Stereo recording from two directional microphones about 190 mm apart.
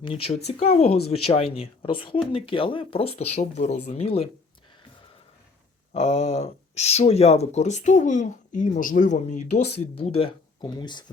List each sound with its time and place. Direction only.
0.0 s speech: 30° left (ahead or behind)
5.9 s speech: 35° left (ahead or behind)